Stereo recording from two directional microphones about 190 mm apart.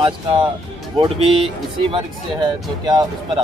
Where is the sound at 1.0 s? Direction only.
30° right (ahead or behind).